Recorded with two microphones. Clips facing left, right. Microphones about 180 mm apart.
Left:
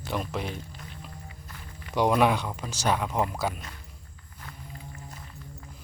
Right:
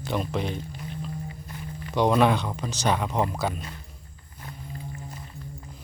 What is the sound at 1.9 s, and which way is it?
Speech, 10° left (ahead or behind).